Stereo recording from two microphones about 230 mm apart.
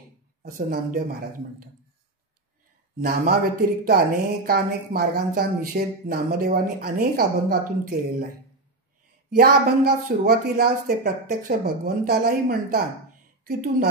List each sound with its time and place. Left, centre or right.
0.6 s speech: right
3.0 s speech: right
9.3 s a woman's voice: right